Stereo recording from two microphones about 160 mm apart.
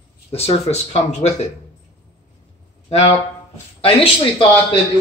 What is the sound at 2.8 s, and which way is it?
Speech, 45° left (ahead or behind).